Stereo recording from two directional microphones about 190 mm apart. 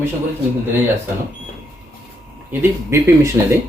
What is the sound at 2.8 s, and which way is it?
Speech, 15° right (ahead or behind).